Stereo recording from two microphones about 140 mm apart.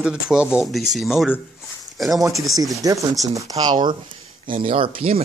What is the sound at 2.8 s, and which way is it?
Speech, 25° right (ahead or behind).